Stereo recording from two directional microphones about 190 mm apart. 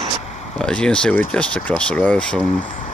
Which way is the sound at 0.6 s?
5° left (ahead or behind).